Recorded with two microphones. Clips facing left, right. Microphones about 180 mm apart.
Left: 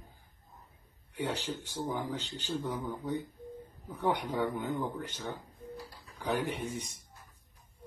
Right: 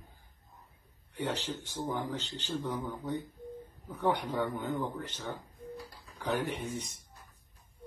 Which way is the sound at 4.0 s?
10° left (ahead or behind).